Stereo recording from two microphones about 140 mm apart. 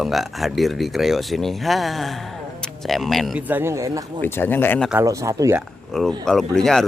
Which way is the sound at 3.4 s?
15° right (ahead or behind).